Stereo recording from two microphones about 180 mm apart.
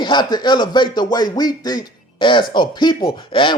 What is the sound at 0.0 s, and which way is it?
Speech, 25° left (ahead or behind).